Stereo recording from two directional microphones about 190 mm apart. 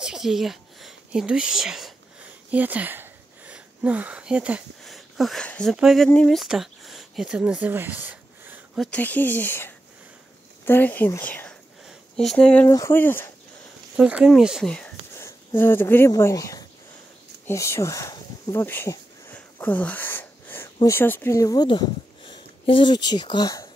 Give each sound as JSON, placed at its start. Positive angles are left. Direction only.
{"t": 0.0, "sound": "speech", "side_deg": 0}
{"t": 13.9, "sound": "speech", "side_deg": -5}